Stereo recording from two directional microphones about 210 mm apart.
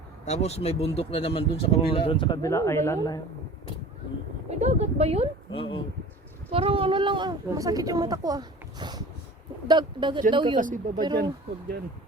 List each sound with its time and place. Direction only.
0.3 s speech: 30° left (ahead or behind)
4.4 s speech: 30° right (ahead or behind)
5.5 s speech: 25° left (ahead or behind)
6.5 s a woman's voice: 25° right (ahead or behind)
10.6 s speech: 40° right (ahead or behind)